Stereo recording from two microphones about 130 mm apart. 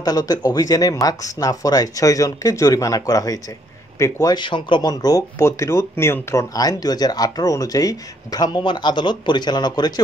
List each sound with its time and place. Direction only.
0.0 s speech: 30° left (ahead or behind)